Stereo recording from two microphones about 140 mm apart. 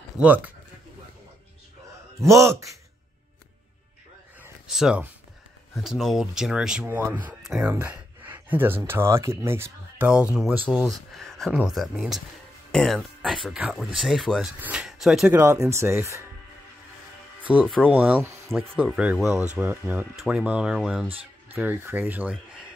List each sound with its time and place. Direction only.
0.2 s speech: 10° right (ahead or behind)
2.1 s speech: 20° right (ahead or behind)
4.6 s speech: 5° right (ahead or behind)
6.9 s speech: 15° right (ahead or behind)
7.4 s speech: centre (ahead or behind)
7.7 s speech: 15° right (ahead or behind)
10.8 s speech: centre (ahead or behind)
15.3 s speech: 20° right (ahead or behind)
17.4 s music: 10° right (ahead or behind)
17.8 s speech: 10° right (ahead or behind)
18.5 s speech: centre (ahead or behind)
20.2 s speech: centre (ahead or behind)